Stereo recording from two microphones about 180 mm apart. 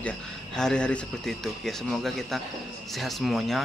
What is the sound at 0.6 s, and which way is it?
Speech, 5° left (ahead or behind).